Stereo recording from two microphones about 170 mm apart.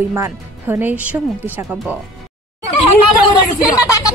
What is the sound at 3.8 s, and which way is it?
Speech, 20° left (ahead or behind).